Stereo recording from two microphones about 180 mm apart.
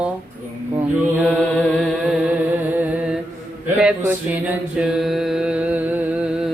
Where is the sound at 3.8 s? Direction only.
5° right (ahead or behind).